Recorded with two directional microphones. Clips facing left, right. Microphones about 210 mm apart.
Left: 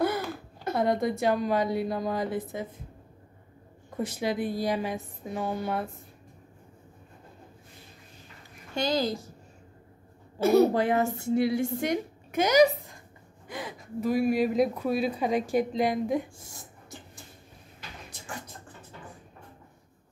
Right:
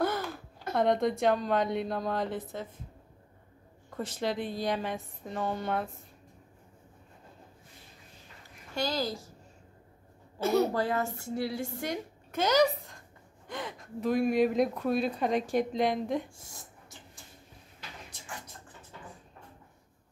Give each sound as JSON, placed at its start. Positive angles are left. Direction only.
{"t": 0.7, "sound": "a woman's voice", "side_deg": 5}
{"t": 3.9, "sound": "a woman's voice", "side_deg": 10}
{"t": 8.7, "sound": "a woman's voice", "side_deg": 20}
{"t": 10.4, "sound": "a woman's voice", "side_deg": 10}
{"t": 10.7, "sound": "a woman's voice", "side_deg": 20}